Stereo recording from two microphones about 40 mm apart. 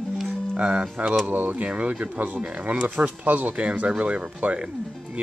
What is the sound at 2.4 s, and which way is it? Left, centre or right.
Speech, right.